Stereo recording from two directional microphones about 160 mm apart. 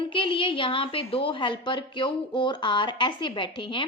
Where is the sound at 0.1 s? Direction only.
30° left (ahead or behind).